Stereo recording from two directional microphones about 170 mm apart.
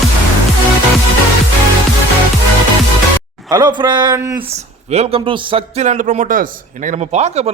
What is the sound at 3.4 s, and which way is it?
Speech, 25° right (ahead or behind).